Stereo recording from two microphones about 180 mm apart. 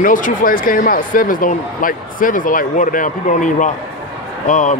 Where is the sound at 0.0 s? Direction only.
50° left (ahead or behind).